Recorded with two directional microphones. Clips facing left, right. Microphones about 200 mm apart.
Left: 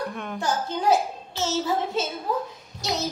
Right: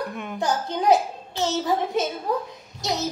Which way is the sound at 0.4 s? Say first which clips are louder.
Right 2 dB; 15° right (ahead or behind).